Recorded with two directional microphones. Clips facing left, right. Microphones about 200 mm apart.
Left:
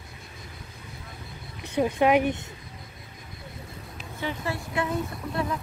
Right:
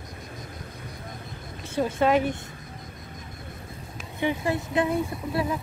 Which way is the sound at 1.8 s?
15° left (ahead or behind).